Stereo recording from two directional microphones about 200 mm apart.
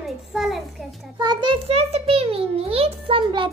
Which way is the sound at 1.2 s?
25° right (ahead or behind).